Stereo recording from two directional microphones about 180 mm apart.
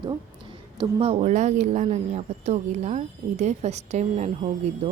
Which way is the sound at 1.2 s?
40° right (ahead or behind).